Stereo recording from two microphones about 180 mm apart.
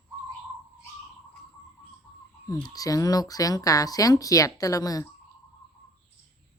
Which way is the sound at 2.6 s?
20° left (ahead or behind).